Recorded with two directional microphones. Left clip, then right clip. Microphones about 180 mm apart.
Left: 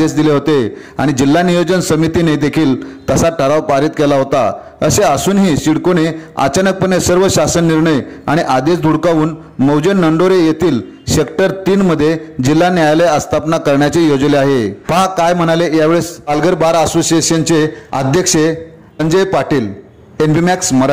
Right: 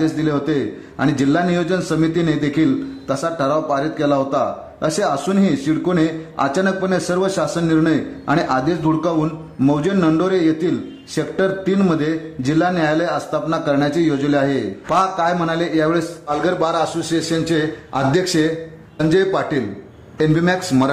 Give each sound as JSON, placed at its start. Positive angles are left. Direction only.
{"t": 0.0, "sound": "a man's voice", "side_deg": 35}